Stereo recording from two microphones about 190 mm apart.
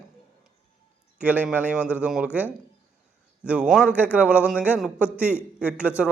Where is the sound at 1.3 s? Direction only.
10° right (ahead or behind).